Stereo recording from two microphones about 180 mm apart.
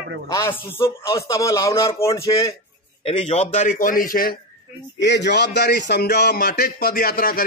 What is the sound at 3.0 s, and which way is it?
A man's voice, 30° left (ahead or behind).